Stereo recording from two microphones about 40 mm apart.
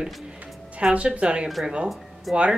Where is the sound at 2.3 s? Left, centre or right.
Centre.